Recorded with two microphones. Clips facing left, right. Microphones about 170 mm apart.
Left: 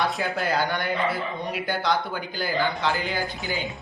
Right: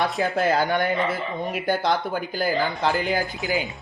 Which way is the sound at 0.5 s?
45° right (ahead or behind).